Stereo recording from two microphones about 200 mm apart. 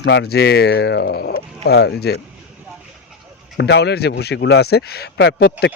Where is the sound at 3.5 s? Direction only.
55° left (ahead or behind).